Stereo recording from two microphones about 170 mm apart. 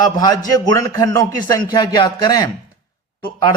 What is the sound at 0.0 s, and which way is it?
A man's voice, 20° left (ahead or behind).